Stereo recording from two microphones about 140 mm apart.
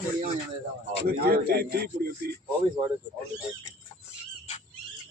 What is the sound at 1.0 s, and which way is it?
Speech, 90° right.